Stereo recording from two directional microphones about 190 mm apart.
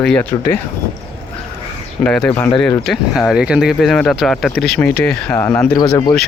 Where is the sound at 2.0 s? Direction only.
5° left (ahead or behind).